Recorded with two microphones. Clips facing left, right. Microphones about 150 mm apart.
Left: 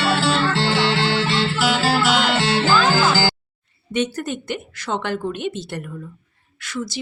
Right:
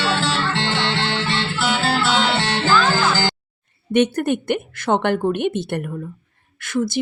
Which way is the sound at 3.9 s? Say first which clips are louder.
Right 6 dB; 55° right (ahead or behind).